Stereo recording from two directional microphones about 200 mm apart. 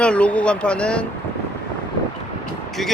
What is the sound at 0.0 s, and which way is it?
Speech, 5° left (ahead or behind).